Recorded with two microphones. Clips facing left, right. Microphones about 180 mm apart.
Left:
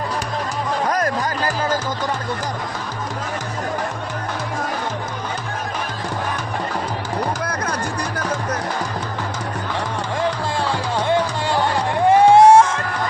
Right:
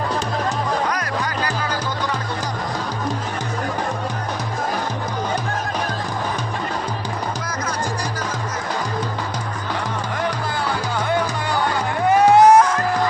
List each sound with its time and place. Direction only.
0.9 s music: 45° left (ahead or behind)
10.2 s music: 25° left (ahead or behind)